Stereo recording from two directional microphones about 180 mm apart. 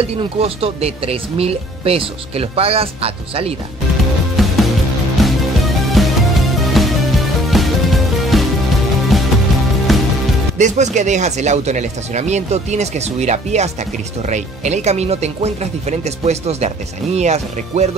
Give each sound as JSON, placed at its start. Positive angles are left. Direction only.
{"t": 0.0, "sound": "speech", "side_deg": -35}
{"t": 4.4, "sound": "music", "side_deg": 0}
{"t": 10.6, "sound": "speech", "side_deg": -40}